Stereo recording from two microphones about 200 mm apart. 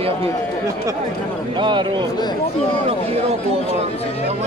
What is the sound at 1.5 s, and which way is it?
Speech, 25° right (ahead or behind).